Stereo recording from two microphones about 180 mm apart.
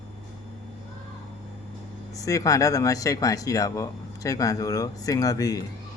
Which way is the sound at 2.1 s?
20° left (ahead or behind).